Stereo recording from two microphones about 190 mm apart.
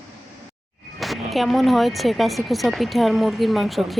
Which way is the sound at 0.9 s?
Centre (ahead or behind).